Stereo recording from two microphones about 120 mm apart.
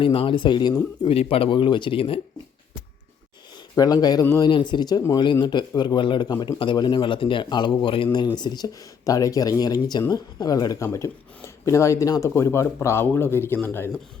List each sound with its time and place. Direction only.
0.0 s speech: 45° left (ahead or behind)
3.8 s a man's voice: 30° left (ahead or behind)